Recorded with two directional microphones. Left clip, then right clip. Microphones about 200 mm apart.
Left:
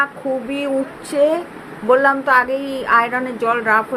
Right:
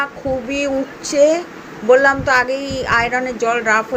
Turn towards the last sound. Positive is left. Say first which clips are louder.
# even
turn(degrees=0)  # may be behind; listen again after turning